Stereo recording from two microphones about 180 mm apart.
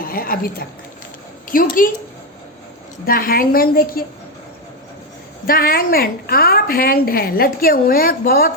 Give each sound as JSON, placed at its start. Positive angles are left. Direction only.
{"t": 0.0, "sound": "a woman's voice", "side_deg": 55}
{"t": 3.1, "sound": "a woman's voice", "side_deg": 55}
{"t": 5.5, "sound": "a woman's voice", "side_deg": 55}